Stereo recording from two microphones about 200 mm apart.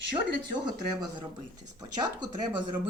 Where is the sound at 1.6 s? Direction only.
20° right (ahead or behind).